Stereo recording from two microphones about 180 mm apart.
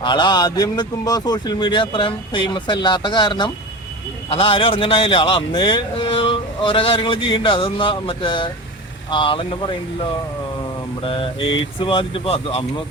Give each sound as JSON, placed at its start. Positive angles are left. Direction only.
{"t": 0.0, "sound": "a man's voice", "side_deg": 25}
{"t": 11.0, "sound": "a man's voice", "side_deg": 30}